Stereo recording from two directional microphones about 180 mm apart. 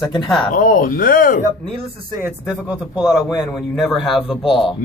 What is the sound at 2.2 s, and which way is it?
Speech, 5° right (ahead or behind).